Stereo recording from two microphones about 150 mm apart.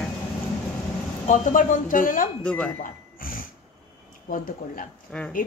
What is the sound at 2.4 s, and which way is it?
Speech, 5° left (ahead or behind).